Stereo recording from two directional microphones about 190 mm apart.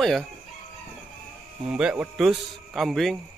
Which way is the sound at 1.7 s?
5° right (ahead or behind).